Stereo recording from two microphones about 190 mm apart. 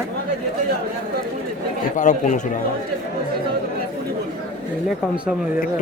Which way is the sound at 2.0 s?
40° left (ahead or behind).